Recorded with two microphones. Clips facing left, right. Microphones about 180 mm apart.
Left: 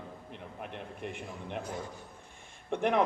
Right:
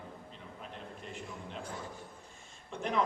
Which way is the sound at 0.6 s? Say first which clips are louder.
Left 6 dB; 65° left (ahead or behind).